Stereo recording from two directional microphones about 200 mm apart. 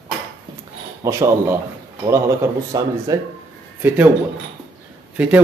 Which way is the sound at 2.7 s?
20° right (ahead or behind).